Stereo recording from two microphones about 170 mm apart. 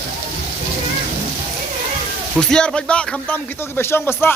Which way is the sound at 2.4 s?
5° left (ahead or behind).